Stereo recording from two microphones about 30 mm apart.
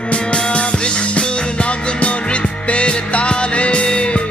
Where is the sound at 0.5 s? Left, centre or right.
Left.